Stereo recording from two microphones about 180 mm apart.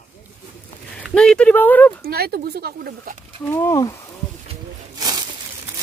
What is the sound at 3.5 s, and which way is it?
Speech, 15° left (ahead or behind).